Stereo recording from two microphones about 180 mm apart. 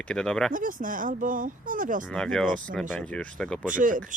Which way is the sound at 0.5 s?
50° right (ahead or behind).